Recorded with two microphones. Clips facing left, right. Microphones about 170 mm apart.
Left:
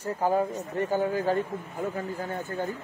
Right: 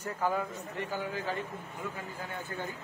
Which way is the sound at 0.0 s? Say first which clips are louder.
Left 6 dB; 35° left (ahead or behind).